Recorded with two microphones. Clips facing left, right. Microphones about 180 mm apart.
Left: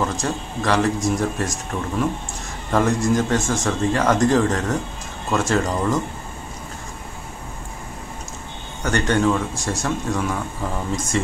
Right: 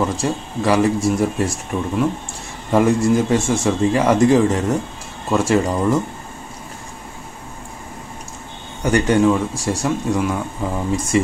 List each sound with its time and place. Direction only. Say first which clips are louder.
0.0 s speech: right 3 dB; 10° right (ahead or behind)
8.8 s speech: right 4 dB; 10° right (ahead or behind)